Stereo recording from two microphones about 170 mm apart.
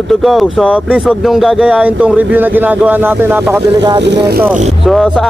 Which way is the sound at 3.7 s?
25° right (ahead or behind).